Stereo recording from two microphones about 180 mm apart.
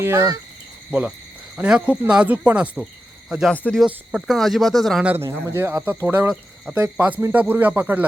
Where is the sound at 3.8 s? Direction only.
5° right (ahead or behind).